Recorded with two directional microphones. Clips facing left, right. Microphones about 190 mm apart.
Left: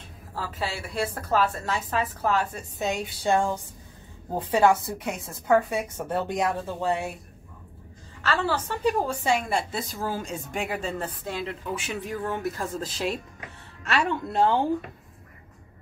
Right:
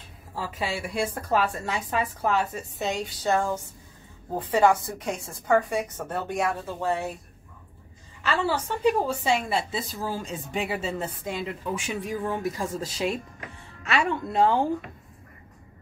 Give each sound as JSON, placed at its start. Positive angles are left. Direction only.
{"t": 0.3, "sound": "a woman's voice", "side_deg": -10}
{"t": 3.3, "sound": "a woman's voice", "side_deg": 15}
{"t": 8.2, "sound": "a woman's voice", "side_deg": -10}